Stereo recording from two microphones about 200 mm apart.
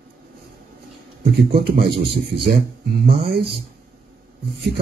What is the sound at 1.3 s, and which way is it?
Speech, 50° right (ahead or behind).